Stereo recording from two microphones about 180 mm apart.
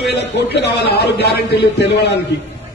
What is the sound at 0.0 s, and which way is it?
A man's voice, 70° left (ahead or behind).